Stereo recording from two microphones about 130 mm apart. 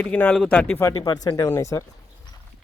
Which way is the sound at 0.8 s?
30° left (ahead or behind).